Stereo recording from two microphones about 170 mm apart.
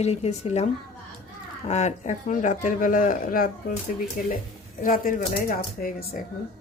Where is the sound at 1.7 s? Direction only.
40° left (ahead or behind); by 6.2 s 60° left (ahead or behind).